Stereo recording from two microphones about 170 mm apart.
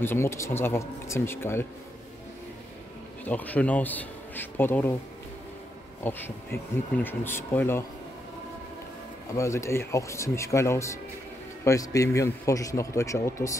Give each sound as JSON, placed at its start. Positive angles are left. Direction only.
{"t": 0.0, "sound": "a man's voice", "side_deg": 15}
{"t": 3.3, "sound": "a man's voice", "side_deg": 10}
{"t": 6.0, "sound": "a man's voice", "side_deg": 10}
{"t": 9.3, "sound": "a man's voice", "side_deg": 15}